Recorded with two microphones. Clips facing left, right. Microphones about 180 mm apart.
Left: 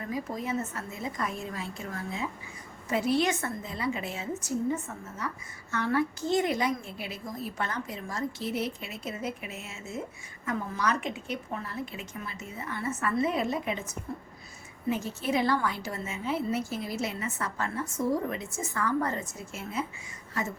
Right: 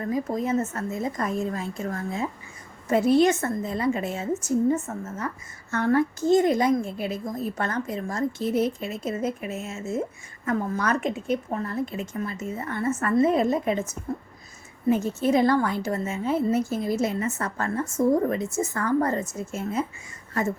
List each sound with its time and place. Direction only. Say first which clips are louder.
0.0 s a woman's voice: right 7 dB; 45° right (ahead or behind)
14.8 s a woman's voice: right 8 dB; 45° right (ahead or behind)